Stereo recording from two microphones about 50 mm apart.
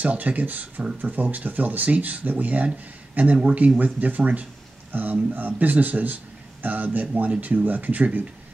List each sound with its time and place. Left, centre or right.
0.0 s speech: right